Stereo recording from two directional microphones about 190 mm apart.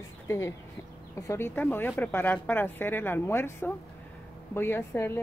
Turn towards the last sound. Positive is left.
turn(degrees=15)  # may be behind; listen again after turning